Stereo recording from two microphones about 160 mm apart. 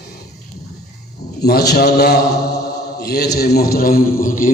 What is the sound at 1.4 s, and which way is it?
A man's voice, 90° left.